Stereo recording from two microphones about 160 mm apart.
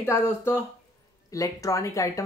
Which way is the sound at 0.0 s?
15° left (ahead or behind).